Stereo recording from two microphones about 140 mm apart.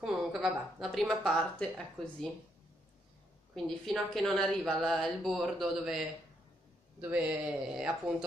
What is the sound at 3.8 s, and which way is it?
Speech, centre (ahead or behind).